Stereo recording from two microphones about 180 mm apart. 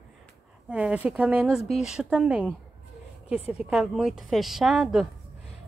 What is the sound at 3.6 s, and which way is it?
A woman's voice, centre (ahead or behind).